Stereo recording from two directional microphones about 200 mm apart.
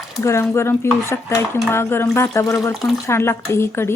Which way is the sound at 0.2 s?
15° left (ahead or behind).